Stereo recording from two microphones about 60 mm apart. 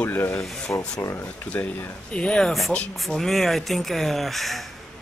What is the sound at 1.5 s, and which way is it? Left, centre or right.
Speech, left.